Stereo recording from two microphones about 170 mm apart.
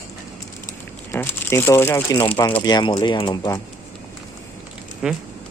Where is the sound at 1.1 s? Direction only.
10° left (ahead or behind).